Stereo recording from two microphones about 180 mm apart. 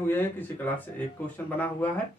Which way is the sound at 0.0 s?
10° left (ahead or behind).